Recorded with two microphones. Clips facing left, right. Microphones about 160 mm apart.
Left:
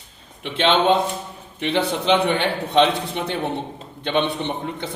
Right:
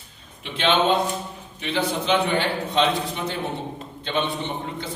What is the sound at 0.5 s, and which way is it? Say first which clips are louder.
Speech: left 3 dB; 25° left (ahead or behind).